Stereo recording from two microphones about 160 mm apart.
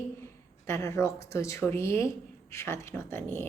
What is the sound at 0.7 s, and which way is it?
Speech, 15° left (ahead or behind).